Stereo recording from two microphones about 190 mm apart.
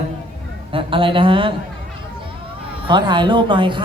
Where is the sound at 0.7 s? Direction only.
25° right (ahead or behind).